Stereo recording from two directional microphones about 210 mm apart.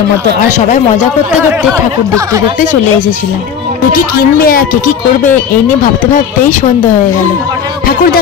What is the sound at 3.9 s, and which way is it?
Speech, 45° left (ahead or behind).